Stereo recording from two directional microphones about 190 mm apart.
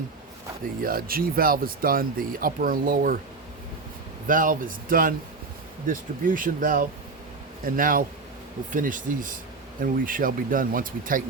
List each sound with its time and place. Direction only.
0.8 s speech: 50° right (ahead or behind)
4.3 s speech: 45° right (ahead or behind)